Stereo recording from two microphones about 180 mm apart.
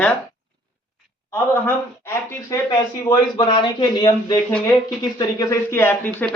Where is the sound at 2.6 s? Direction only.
25° left (ahead or behind).